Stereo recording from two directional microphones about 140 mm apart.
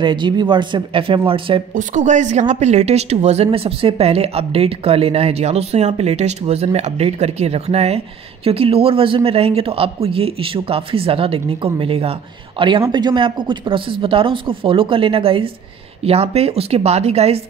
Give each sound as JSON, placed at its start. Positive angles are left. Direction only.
{"t": 0.0, "sound": "speech", "side_deg": -35}
{"t": 1.7, "sound": "a woman's voice", "side_deg": -65}